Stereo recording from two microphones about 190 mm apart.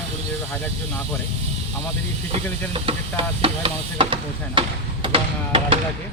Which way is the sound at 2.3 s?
30° right (ahead or behind).